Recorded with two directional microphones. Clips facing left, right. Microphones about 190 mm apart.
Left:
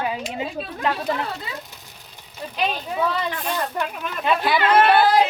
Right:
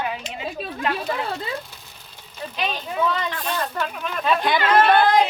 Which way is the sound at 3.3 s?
10° left (ahead or behind).